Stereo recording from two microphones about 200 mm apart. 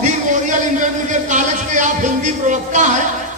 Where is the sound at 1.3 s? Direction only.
40° right (ahead or behind).